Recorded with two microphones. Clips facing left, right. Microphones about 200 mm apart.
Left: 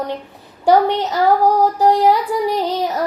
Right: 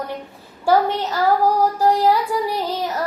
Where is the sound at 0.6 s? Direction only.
20° left (ahead or behind).